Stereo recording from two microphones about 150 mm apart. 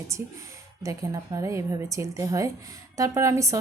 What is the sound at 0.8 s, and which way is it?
A woman's voice, 20° right (ahead or behind).